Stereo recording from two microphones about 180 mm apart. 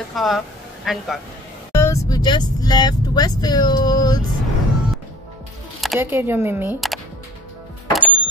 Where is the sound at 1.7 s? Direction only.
15° left (ahead or behind).